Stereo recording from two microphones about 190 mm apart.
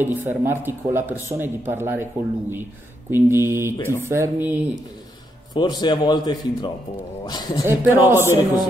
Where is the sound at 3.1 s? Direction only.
10° right (ahead or behind).